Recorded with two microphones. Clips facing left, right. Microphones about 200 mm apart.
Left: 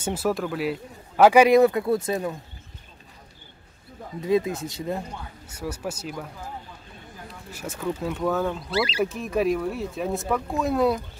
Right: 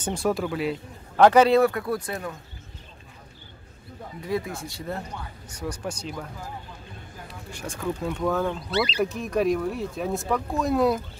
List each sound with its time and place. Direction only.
0.0 s a man's voice: 5° left (ahead or behind); by 2.3 s 20° left (ahead or behind)
4.3 s speech: 20° left (ahead or behind)
5.5 s a man's voice: 5° left (ahead or behind)
7.5 s speech: 5° left (ahead or behind)